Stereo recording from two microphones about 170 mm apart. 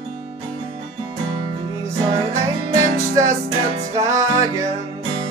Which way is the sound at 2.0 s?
20° right (ahead or behind).